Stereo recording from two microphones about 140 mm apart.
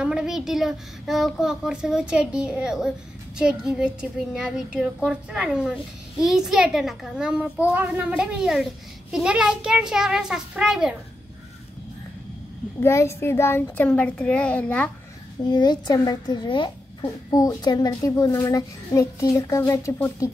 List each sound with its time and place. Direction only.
0.0 s speech: 5° right (ahead or behind)
12.8 s a child's voice: 20° left (ahead or behind)
15.5 s a woman's voice: 30° left (ahead or behind)